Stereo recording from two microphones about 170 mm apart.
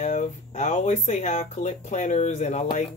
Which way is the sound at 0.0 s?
45° left (ahead or behind).